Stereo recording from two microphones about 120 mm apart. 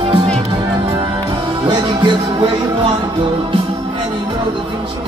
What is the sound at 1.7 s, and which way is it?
Music, 40° right (ahead or behind).